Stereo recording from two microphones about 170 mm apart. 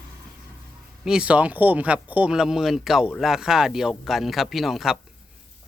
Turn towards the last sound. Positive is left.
turn(degrees=0)  # may be behind; listen again after turning